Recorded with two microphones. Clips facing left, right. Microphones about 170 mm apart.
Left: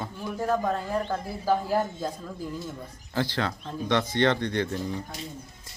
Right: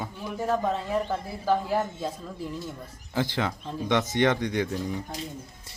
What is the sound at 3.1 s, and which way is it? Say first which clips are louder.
A man's voice: even; 15° right (ahead or behind).